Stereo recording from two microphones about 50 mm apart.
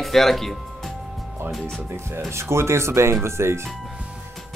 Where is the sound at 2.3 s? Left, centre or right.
Right.